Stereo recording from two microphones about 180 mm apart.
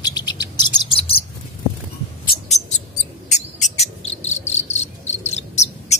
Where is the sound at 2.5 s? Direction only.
40° left (ahead or behind).